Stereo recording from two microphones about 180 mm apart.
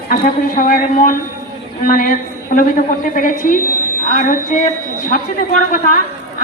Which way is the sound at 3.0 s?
45° left (ahead or behind).